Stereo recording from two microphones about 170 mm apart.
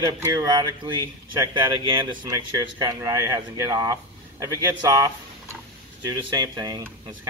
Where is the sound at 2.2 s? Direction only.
20° right (ahead or behind).